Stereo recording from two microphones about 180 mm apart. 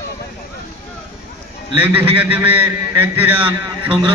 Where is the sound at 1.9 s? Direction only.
10° right (ahead or behind).